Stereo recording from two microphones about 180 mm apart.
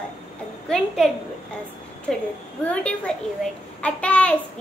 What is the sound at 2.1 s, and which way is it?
A child's voice, centre (ahead or behind).